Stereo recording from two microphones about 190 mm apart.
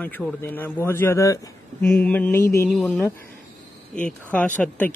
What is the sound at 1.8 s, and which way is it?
Speech, 5° left (ahead or behind).